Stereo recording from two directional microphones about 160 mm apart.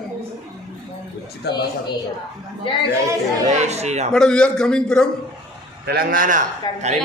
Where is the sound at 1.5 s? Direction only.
90° left.